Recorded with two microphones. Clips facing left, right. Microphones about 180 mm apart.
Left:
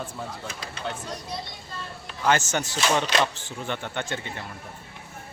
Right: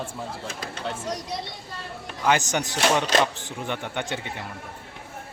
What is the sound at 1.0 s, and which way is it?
Speech, 90° right.